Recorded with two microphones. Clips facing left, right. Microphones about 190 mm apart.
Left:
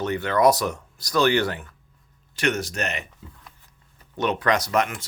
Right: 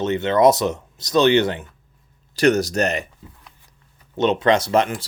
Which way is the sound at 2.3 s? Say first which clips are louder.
Right 8 dB; 40° right (ahead or behind).